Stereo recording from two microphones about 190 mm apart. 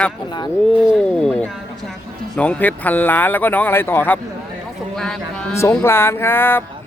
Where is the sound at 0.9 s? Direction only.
5° left (ahead or behind).